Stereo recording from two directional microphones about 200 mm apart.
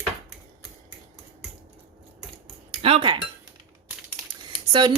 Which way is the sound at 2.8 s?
25° right (ahead or behind).